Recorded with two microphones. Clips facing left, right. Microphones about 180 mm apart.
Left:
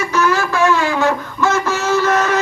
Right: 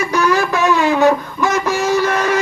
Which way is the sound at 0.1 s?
15° right (ahead or behind).